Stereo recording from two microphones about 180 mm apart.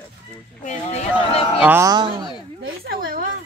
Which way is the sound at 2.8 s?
55° right (ahead or behind).